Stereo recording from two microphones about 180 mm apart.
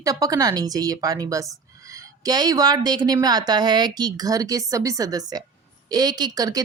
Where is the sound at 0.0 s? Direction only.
20° right (ahead or behind).